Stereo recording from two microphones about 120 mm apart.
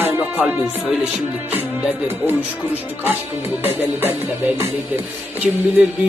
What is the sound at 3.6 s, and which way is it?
Music, 15° right (ahead or behind).